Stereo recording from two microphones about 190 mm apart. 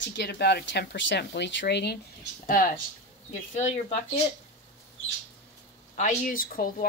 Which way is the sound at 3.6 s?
40° left (ahead or behind).